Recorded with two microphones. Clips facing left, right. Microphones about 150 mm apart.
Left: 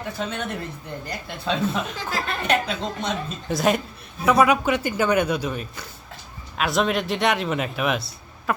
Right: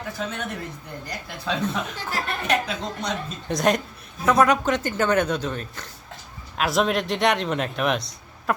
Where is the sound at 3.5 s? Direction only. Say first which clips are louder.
Even; 5° left (ahead or behind).